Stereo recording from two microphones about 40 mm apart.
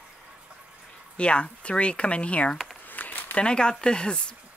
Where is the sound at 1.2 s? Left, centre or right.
Left.